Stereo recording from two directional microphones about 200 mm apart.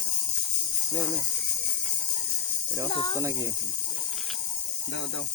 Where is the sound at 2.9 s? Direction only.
25° left (ahead or behind).